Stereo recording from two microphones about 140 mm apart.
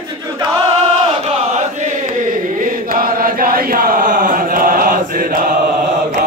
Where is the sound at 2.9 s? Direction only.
90° right.